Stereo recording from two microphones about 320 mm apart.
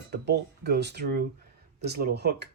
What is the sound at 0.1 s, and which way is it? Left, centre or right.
Speech, right.